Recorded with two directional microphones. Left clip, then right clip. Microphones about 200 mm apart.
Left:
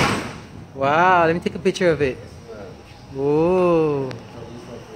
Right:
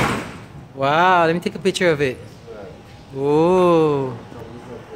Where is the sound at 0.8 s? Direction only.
15° right (ahead or behind).